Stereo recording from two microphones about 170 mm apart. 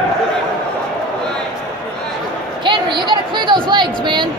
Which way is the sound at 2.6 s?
30° right (ahead or behind).